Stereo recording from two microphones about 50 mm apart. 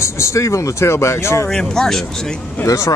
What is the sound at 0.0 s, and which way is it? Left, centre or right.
Speech, left.